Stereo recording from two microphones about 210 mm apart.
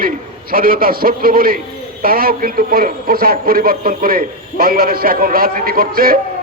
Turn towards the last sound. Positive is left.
turn(degrees=-45)  # may be behind; listen again after turning